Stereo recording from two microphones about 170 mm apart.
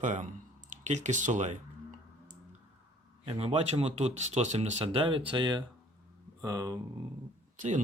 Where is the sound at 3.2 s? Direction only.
35° right (ahead or behind).